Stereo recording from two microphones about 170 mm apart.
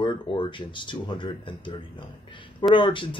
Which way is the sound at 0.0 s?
25° left (ahead or behind).